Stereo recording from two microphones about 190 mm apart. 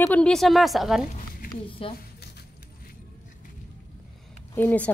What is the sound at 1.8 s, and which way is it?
Speech, 30° left (ahead or behind).